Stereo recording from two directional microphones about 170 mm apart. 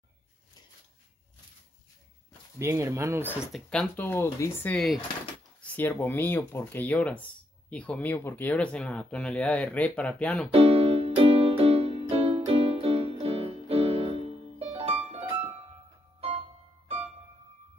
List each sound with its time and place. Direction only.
2.6 s speech: 15° right (ahead or behind)
3.5 s speech: 10° left (ahead or behind)
10.5 s music: 35° right (ahead or behind)